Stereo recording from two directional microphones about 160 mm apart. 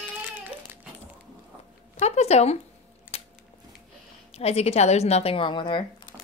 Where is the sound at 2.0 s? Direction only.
40° left (ahead or behind).